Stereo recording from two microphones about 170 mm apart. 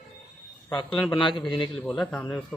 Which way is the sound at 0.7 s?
30° left (ahead or behind).